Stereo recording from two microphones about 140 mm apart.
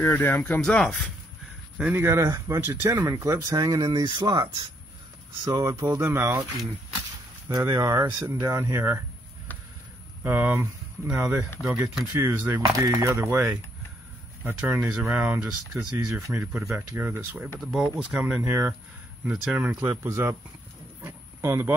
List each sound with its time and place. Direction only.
0.0 s speech: 15° left (ahead or behind)
1.8 s speech: 15° right (ahead or behind)
7.4 s speech: 20° right (ahead or behind)
10.2 s speech: 15° right (ahead or behind)
21.0 s a sound: 20° right (ahead or behind)